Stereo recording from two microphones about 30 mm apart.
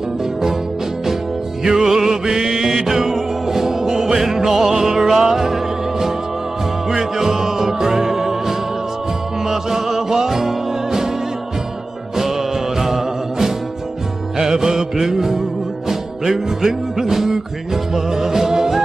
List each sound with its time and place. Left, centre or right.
1.6 s music: centre
12.7 s music: centre